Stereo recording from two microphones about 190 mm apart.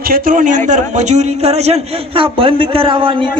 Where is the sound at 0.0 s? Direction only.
50° right (ahead or behind).